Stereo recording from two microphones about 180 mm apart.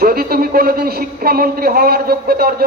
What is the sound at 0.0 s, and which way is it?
A man's voice, 55° right (ahead or behind).